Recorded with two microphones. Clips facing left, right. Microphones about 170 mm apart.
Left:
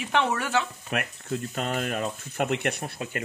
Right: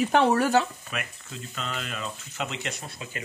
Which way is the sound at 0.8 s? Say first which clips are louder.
Left 6 dB; 60° left (ahead or behind).